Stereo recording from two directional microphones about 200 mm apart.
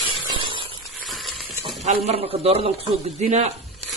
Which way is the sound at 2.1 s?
30° right (ahead or behind).